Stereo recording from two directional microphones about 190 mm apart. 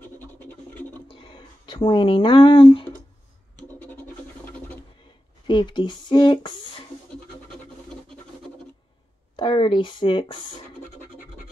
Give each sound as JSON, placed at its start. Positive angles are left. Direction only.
{"t": 0.0, "sound": "scratch", "side_deg": 10}
{"t": 1.0, "sound": "a sound", "side_deg": 25}
{"t": 3.5, "sound": "scratch", "side_deg": 10}
{"t": 5.5, "sound": "speech", "side_deg": 25}
{"t": 7.4, "sound": "scratch", "side_deg": 5}
{"t": 9.4, "sound": "speech", "side_deg": 25}